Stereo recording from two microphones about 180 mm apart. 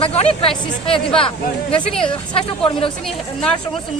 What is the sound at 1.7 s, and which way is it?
Speech, 5° left (ahead or behind).